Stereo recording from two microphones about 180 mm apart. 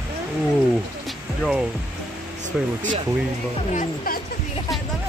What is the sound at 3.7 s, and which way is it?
Speech, 45° left (ahead or behind).